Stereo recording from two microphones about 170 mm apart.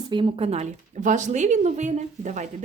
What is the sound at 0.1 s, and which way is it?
Speech, 30° right (ahead or behind).